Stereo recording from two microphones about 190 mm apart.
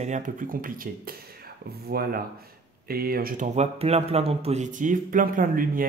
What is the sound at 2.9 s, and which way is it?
Mantra, 50° right (ahead or behind).